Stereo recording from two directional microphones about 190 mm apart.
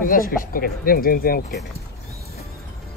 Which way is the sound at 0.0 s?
45° left (ahead or behind).